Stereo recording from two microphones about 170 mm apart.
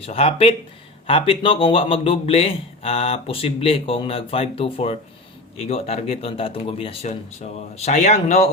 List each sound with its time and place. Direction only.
0.0 s a man's voice: 35° left (ahead or behind)